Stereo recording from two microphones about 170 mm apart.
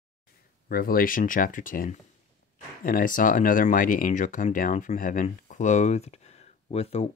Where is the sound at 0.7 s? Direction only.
60° left (ahead or behind).